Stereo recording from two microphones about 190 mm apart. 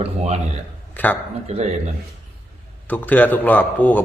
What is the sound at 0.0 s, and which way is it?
Speech, 35° right (ahead or behind).